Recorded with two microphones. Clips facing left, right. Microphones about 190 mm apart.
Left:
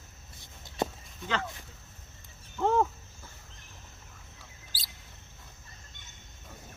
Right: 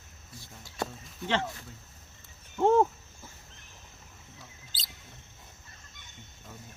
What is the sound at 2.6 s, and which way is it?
Speech, 25° right (ahead or behind).